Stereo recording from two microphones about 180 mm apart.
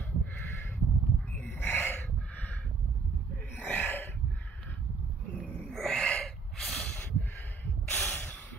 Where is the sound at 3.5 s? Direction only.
10° left (ahead or behind).